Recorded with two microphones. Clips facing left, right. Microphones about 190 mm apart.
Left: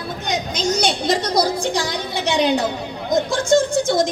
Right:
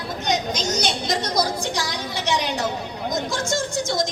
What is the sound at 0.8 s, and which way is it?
Speech, 60° left (ahead or behind).